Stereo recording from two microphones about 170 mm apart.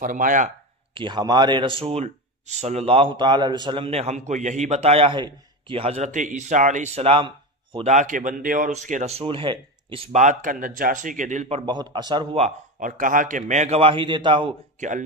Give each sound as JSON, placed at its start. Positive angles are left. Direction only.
{"t": 0.0, "sound": "speech", "side_deg": -50}
{"t": 0.9, "sound": "a man's voice", "side_deg": -25}
{"t": 7.9, "sound": "speech", "side_deg": -45}
{"t": 10.1, "sound": "speech", "side_deg": -50}
{"t": 14.8, "sound": "speech", "side_deg": -45}